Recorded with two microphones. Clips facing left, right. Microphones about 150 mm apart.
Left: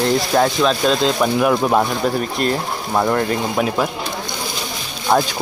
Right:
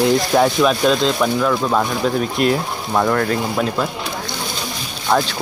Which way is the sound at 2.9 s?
10° left (ahead or behind).